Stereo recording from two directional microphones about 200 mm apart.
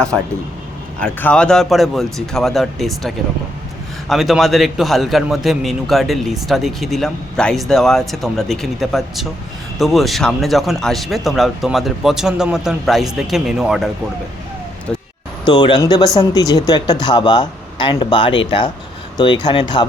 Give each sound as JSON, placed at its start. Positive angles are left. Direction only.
{"t": 1.0, "sound": "a man's voice", "side_deg": 5}
{"t": 4.1, "sound": "a man's voice", "side_deg": 0}
{"t": 14.9, "sound": "a sound", "side_deg": 5}
{"t": 15.4, "sound": "speech", "side_deg": 20}